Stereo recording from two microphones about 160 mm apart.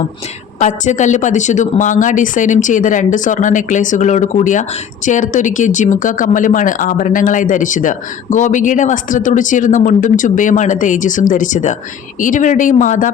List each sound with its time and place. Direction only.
0.6 s speech: 50° left (ahead or behind)